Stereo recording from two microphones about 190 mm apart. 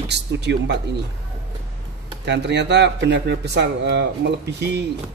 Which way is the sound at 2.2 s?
65° right (ahead or behind).